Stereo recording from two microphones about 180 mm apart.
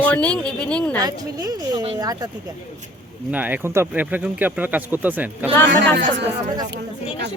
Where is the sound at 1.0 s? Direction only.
20° right (ahead or behind).